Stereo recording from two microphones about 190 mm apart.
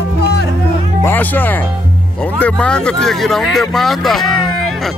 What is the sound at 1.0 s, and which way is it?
Speech, 10° left (ahead or behind).